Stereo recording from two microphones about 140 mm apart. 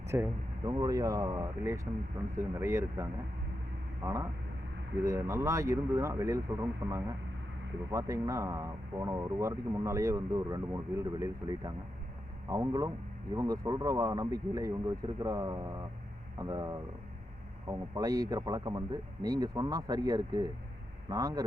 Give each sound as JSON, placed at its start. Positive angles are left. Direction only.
{"t": 0.1, "sound": "speech", "side_deg": -20}